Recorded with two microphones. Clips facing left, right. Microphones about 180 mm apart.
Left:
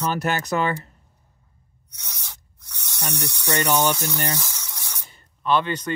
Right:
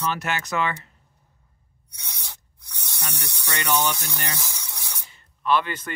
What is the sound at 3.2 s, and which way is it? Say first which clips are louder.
Speech: left 7 dB; 10° left (ahead or behind).